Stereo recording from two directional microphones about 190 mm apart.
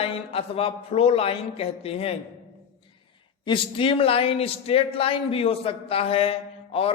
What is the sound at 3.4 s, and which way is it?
Speech, 25° left (ahead or behind).